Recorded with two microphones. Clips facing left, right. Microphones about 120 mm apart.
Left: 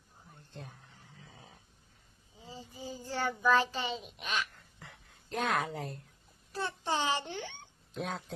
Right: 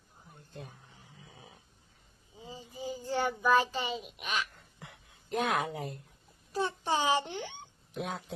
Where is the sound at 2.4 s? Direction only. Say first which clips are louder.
Right 4 dB; 15° right (ahead or behind).